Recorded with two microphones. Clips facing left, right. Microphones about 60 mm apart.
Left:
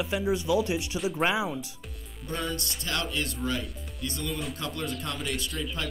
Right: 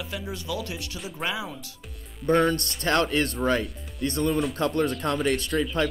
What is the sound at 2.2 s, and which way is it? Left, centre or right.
Speech, right.